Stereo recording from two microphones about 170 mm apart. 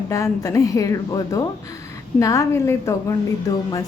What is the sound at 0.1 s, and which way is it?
A woman's voice, 20° left (ahead or behind).